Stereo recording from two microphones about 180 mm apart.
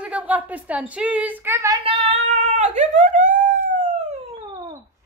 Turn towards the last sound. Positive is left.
turn(degrees=-45)  # may be behind; listen again after turning